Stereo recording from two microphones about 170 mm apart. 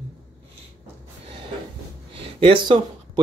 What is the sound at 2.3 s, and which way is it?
Speech, 30° right (ahead or behind).